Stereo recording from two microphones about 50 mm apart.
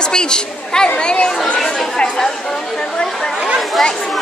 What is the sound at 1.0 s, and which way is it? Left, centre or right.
Chatter, centre.